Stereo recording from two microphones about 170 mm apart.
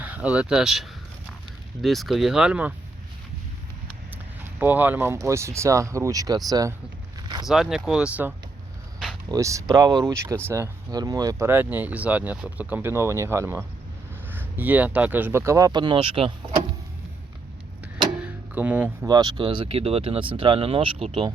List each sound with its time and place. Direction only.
0.0 s speech: 10° right (ahead or behind)
4.4 s speech: 10° right (ahead or behind)
7.4 s speech: centre (ahead or behind)
9.3 s speech: 20° right (ahead or behind)
18.2 s tick-tock: 10° right (ahead or behind)
19.0 s speech: 25° right (ahead or behind)